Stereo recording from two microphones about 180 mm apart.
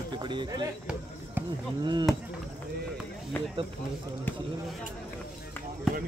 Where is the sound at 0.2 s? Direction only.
25° right (ahead or behind).